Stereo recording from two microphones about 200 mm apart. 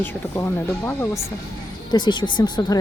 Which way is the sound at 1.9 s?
20° left (ahead or behind).